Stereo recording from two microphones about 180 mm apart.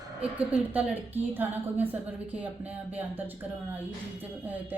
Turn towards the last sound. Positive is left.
turn(degrees=-10)  # may be behind; listen again after turning